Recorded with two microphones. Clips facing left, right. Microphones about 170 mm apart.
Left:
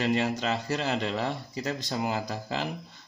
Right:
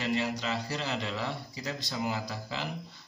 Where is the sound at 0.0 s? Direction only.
50° left (ahead or behind).